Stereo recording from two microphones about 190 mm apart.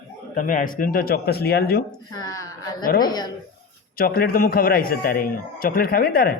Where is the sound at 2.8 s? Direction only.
50° left (ahead or behind).